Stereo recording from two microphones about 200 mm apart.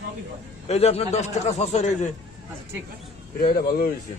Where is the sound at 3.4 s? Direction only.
50° left (ahead or behind).